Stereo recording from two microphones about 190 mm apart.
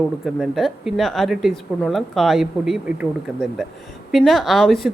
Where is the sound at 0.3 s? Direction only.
Centre (ahead or behind).